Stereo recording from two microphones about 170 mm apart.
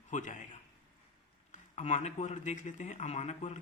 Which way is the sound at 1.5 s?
45° left (ahead or behind).